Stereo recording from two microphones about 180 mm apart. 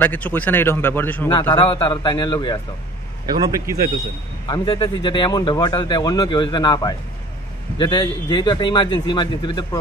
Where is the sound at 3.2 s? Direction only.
20° right (ahead or behind).